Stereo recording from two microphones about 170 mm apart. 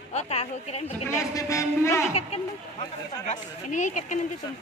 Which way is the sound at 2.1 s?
40° left (ahead or behind).